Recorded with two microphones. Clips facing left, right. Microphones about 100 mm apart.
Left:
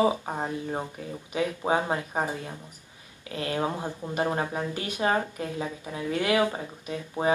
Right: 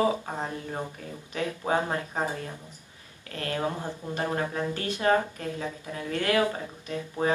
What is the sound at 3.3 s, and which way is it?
Speech, 15° left (ahead or behind).